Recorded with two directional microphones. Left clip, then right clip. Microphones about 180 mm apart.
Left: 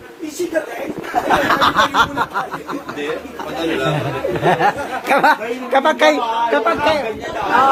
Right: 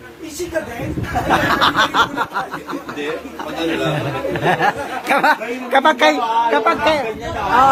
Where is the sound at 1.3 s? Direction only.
Centre (ahead or behind).